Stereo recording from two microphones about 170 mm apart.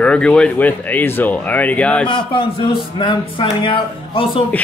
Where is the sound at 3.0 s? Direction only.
30° left (ahead or behind).